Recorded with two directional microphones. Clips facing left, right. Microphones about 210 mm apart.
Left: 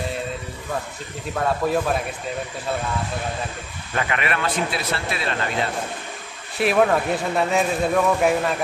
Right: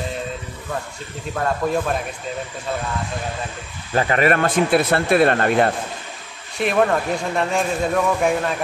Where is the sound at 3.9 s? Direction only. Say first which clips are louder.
Right 7 dB; 35° right (ahead or behind); by 5.7 s 55° right (ahead or behind).